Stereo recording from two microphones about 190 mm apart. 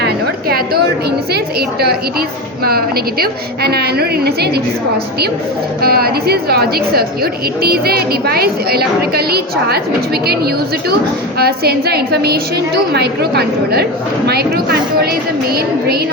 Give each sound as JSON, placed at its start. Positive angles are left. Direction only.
{"t": 0.0, "sound": "a sound", "side_deg": -55}
{"t": 1.3, "sound": "a woman's voice", "side_deg": -55}
{"t": 5.8, "sound": "a woman's voice", "side_deg": -55}